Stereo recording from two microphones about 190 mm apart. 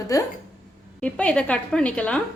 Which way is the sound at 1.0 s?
5° left (ahead or behind).